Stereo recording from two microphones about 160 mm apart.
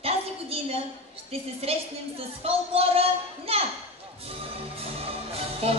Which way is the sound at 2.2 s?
40° right (ahead or behind).